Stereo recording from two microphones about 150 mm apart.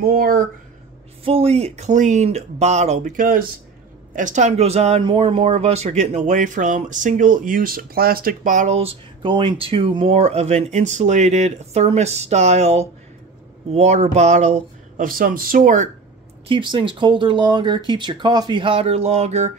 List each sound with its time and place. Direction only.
0.0 s speech: 80° right
1.2 s speech: 40° right (ahead or behind)
15.0 s speech: 70° right (ahead or behind)
16.4 s speech: 35° right (ahead or behind)